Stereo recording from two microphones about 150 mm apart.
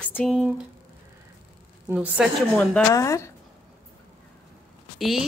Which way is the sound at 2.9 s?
20° left (ahead or behind).